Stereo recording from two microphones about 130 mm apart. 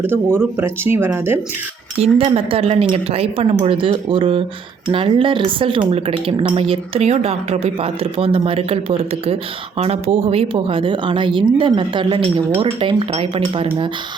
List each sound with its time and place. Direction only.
0.0 s speech: 15° right (ahead or behind)
2.0 s speech: 50° right (ahead or behind)